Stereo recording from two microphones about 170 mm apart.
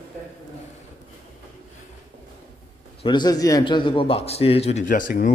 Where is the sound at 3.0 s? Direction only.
25° left (ahead or behind).